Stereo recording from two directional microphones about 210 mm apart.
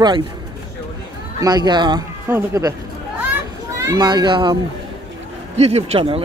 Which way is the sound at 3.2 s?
10° right (ahead or behind).